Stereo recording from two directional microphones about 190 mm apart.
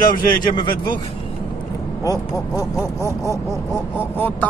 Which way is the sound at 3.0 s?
15° right (ahead or behind).